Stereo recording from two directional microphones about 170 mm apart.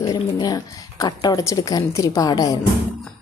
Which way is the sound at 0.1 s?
20° left (ahead or behind).